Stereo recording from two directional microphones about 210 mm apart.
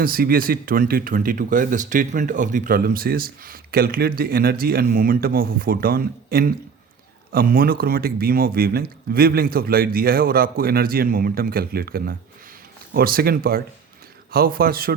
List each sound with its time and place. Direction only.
0.0 s speech: 45° right (ahead or behind)